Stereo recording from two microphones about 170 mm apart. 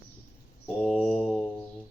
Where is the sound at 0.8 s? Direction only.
Centre (ahead or behind).